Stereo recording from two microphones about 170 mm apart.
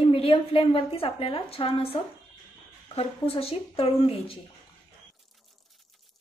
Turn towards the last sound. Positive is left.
turn(degrees=35)  # may be behind; listen again after turning